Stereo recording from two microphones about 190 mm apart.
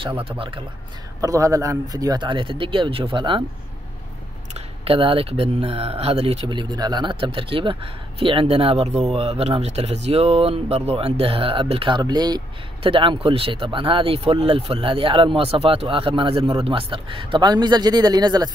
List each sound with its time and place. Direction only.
0.2 s speech: 30° right (ahead or behind)
1.2 s speech: 15° right (ahead or behind)
4.6 s speech: 30° right (ahead or behind)